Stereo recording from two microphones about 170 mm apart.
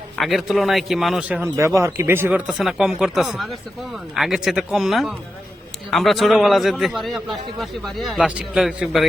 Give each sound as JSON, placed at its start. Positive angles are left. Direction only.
{"t": 0.2, "sound": "a man's voice", "side_deg": 0}
{"t": 2.5, "sound": "a man's voice", "side_deg": 0}